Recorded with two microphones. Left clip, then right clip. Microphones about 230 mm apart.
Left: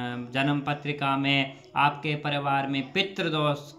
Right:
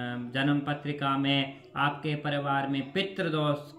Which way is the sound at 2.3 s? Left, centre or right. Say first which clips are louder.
Left 2 dB; centre.